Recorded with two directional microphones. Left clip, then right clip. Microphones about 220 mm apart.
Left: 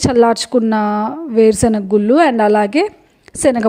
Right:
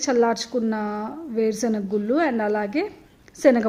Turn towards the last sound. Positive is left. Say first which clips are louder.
# left 3 dB
turn(degrees=40)  # may be behind; listen again after turning